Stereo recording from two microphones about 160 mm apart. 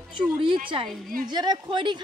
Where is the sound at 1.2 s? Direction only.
25° right (ahead or behind).